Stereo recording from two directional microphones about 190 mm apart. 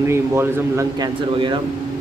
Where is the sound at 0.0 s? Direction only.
15° right (ahead or behind).